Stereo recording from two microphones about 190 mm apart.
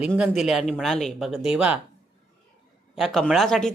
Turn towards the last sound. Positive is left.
turn(degrees=0)  # may be behind; listen again after turning